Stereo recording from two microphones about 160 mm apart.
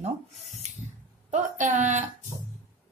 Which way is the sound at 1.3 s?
50° right (ahead or behind).